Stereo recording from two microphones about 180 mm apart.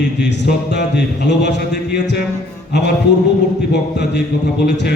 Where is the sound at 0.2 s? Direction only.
75° left (ahead or behind).